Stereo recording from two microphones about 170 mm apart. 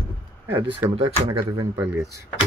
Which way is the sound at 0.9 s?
35° right (ahead or behind).